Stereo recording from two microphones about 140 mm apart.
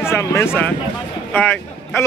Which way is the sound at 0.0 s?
20° left (ahead or behind).